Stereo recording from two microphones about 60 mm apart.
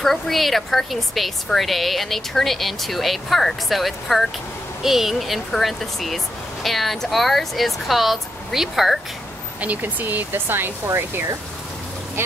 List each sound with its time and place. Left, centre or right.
0.0 s a woman's voice: centre
9.6 s speech: right